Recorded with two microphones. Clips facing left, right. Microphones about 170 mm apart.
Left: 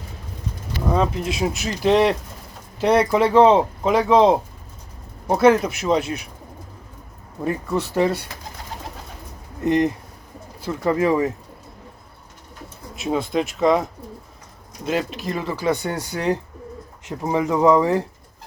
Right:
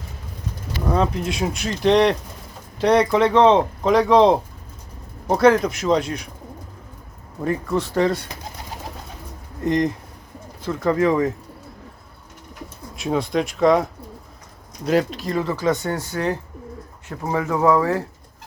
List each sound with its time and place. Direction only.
0.9 s speech: centre (ahead or behind)
7.4 s speech: 10° left (ahead or behind)
9.6 s speech: 10° left (ahead or behind)
13.0 s speech: centre (ahead or behind)
15.3 s speech: 15° left (ahead or behind)